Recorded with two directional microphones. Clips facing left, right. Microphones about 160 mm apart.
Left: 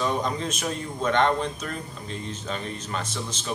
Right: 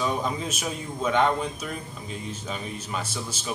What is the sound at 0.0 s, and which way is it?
Speech, 5° right (ahead or behind).